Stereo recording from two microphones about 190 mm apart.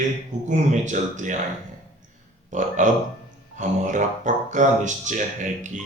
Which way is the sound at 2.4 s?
40° right (ahead or behind).